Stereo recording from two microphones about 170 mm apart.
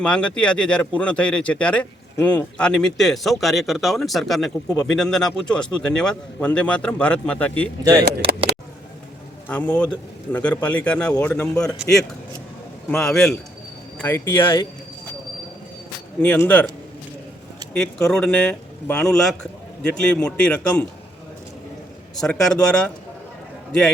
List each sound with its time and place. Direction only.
0.0 s speech: 5° left (ahead or behind)
8.2 s speech: 30° right (ahead or behind)
9.5 s a man's voice: 5° left (ahead or behind)
16.2 s a man's voice: 10° left (ahead or behind)
17.7 s speech: 5° left (ahead or behind)
22.1 s speech: 5° left (ahead or behind)